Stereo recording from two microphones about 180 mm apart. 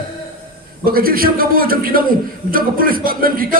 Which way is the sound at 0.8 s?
55° right (ahead or behind).